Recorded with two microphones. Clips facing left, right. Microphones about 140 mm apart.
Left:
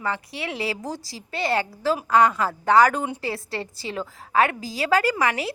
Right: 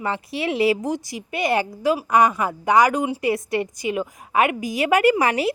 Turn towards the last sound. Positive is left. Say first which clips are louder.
# right 6 dB
turn(degrees=-25)  # may be behind; listen again after turning